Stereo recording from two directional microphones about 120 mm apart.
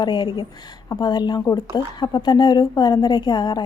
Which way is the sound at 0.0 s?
40° left (ahead or behind).